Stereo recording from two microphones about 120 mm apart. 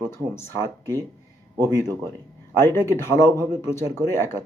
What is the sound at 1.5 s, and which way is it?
Speech, 30° right (ahead or behind).